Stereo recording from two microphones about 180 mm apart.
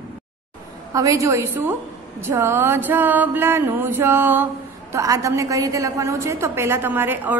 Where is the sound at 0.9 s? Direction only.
20° right (ahead or behind).